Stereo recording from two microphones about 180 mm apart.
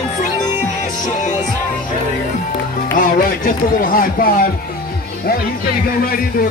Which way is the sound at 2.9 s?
50° left (ahead or behind).